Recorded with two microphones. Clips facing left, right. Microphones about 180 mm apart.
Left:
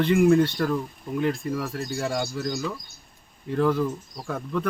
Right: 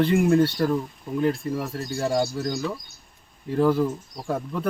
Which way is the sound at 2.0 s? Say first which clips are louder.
Right 5 dB; 35° right (ahead or behind).